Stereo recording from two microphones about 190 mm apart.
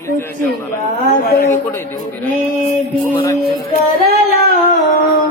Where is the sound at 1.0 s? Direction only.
55° left (ahead or behind).